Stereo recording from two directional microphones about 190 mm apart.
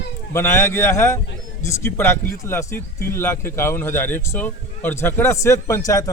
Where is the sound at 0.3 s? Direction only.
15° left (ahead or behind).